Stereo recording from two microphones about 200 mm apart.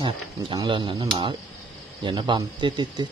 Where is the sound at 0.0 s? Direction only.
25° right (ahead or behind).